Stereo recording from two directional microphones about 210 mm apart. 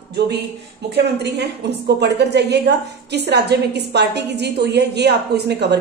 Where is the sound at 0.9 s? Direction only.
50° right (ahead or behind).